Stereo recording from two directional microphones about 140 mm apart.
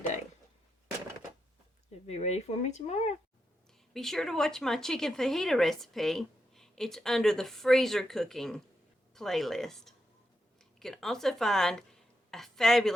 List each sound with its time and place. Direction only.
2.0 s speech: 50° left (ahead or behind)
3.9 s speech: centre (ahead or behind)